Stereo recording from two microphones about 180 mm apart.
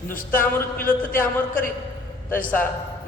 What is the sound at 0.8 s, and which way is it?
Speech, 50° left (ahead or behind).